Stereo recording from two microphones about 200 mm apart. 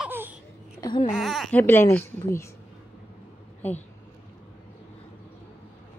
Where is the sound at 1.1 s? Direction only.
Centre (ahead or behind).